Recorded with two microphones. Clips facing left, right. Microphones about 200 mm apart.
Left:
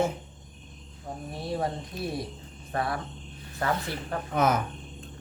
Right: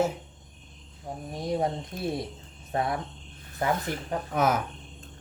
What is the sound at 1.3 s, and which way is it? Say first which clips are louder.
Speech: right 3 dB; 15° right (ahead or behind).